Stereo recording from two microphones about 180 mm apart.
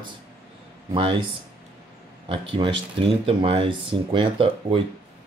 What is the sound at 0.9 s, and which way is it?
Speech, 30° right (ahead or behind).